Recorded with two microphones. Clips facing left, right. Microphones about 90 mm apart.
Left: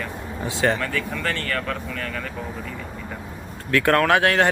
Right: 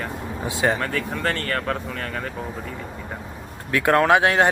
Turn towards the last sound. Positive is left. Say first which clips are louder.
# right 1 dB
turn(degrees=-20)  # may be behind; listen again after turning